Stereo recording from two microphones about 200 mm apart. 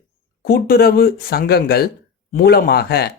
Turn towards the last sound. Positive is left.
turn(degrees=55)  # may be behind; listen again after turning